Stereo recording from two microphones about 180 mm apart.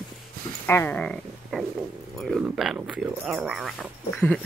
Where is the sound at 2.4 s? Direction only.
5° right (ahead or behind).